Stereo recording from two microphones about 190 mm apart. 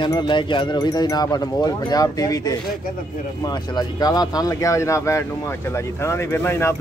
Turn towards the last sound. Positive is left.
turn(degrees=10)  # may be behind; listen again after turning